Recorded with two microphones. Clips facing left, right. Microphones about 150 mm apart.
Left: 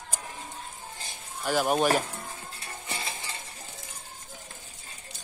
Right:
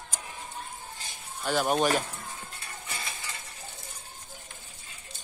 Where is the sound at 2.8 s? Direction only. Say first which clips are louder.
Left 3 dB; 25° left (ahead or behind).